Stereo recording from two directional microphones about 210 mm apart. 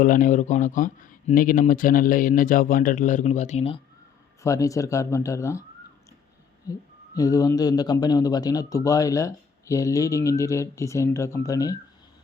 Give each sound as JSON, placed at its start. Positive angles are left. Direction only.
{"t": 0.0, "sound": "speech", "side_deg": 40}
{"t": 4.4, "sound": "a man's voice", "side_deg": 15}
{"t": 6.7, "sound": "a man's voice", "side_deg": 15}